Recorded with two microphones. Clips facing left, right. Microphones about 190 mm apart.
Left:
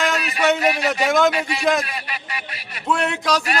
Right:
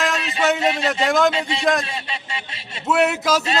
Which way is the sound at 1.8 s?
25° right (ahead or behind).